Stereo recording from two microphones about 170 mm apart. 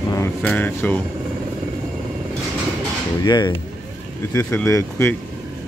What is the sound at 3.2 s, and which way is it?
Speech, 25° left (ahead or behind).